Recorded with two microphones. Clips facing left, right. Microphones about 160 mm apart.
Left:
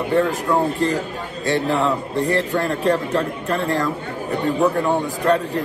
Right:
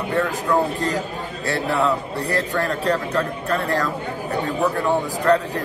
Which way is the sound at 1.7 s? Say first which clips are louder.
Left 1 dB; 20° left (ahead or behind).